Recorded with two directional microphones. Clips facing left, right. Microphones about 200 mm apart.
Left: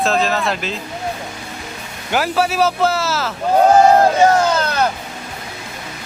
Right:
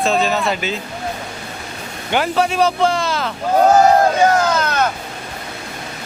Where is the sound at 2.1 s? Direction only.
5° left (ahead or behind).